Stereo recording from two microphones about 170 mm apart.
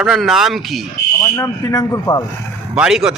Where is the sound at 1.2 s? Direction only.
20° left (ahead or behind).